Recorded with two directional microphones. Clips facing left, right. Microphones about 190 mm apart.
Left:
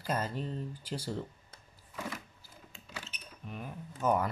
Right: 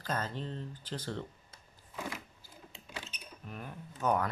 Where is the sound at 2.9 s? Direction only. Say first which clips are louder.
Right 1 dB; 15° right (ahead or behind).